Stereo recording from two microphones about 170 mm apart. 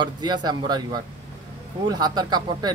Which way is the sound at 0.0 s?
25° right (ahead or behind).